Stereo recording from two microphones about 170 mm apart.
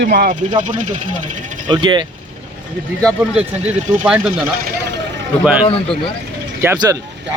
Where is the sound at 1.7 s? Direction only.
25° right (ahead or behind).